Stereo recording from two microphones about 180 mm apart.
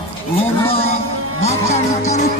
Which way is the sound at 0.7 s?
35° left (ahead or behind).